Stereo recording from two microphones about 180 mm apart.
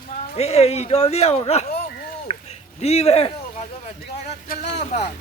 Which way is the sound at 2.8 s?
35° left (ahead or behind).